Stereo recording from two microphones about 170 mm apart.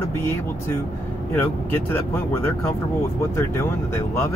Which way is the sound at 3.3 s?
15° left (ahead or behind).